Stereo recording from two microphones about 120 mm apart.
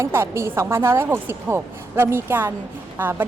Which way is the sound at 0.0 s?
20° right (ahead or behind).